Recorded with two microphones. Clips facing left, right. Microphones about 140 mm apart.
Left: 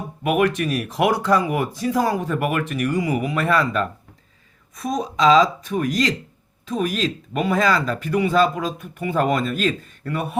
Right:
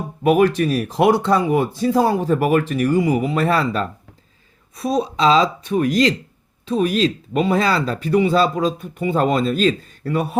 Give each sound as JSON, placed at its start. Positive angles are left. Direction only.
{"t": 0.2, "sound": "speech", "side_deg": -35}